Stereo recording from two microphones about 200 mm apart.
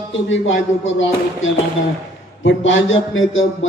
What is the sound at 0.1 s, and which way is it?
A man's voice, 70° left (ahead or behind).